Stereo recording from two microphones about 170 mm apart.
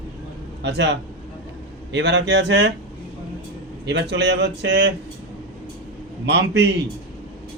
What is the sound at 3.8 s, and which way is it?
Speech, 90° right.